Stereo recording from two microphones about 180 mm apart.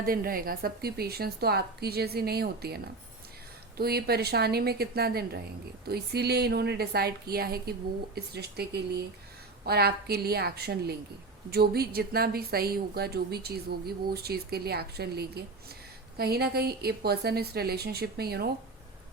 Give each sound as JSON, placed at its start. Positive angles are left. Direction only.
{"t": 0.0, "sound": "a woman's voice", "side_deg": -55}